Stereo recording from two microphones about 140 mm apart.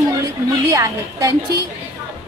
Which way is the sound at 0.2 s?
25° right (ahead or behind).